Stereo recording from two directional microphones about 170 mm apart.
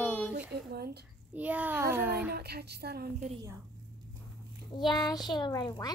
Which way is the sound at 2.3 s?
70° right (ahead or behind).